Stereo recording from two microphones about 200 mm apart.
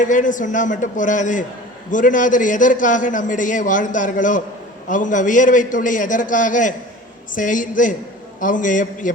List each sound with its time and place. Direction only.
0.0 s a man's voice: 40° left (ahead or behind)